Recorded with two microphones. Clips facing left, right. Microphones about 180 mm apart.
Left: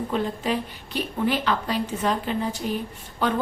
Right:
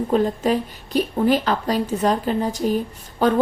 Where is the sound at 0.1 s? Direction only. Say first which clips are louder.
Right 8 dB; 40° right (ahead or behind).